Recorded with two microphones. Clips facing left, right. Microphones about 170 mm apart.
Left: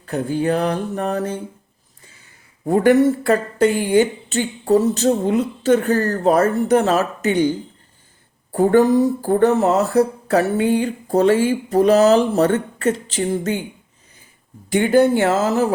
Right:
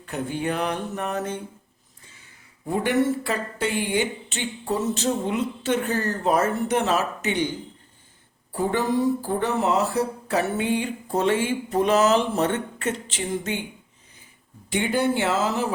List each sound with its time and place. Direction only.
0.0 s speech: 35° left (ahead or behind)
2.6 s a woman's voice: 45° left (ahead or behind)
9.2 s speech: 45° left (ahead or behind)
14.7 s a woman's voice: 45° left (ahead or behind)